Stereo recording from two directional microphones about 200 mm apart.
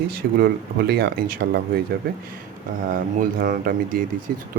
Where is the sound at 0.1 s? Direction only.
50° right (ahead or behind).